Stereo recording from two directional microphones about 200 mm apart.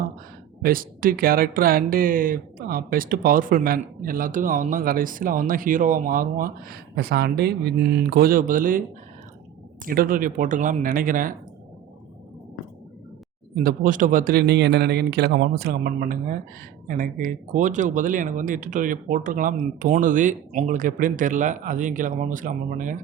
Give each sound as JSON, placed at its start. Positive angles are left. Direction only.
{"t": 0.6, "sound": "speech", "side_deg": -45}
{"t": 9.8, "sound": "speech", "side_deg": -45}
{"t": 13.7, "sound": "speech", "side_deg": -40}